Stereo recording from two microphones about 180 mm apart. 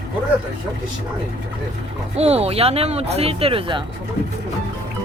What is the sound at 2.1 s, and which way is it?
Speech, 35° right (ahead or behind).